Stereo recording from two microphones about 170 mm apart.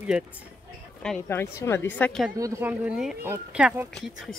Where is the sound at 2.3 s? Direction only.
20° right (ahead or behind).